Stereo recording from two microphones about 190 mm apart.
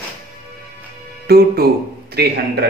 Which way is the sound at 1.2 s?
55° right (ahead or behind).